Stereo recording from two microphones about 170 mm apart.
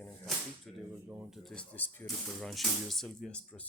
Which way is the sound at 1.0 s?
15° right (ahead or behind).